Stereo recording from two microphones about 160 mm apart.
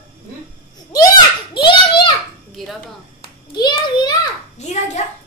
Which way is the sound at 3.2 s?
25° left (ahead or behind).